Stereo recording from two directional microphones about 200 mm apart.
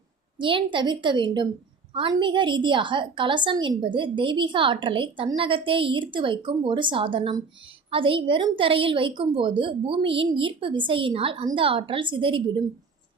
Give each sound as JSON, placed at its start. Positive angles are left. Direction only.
{"t": 0.3, "sound": "a woman's voice", "side_deg": -25}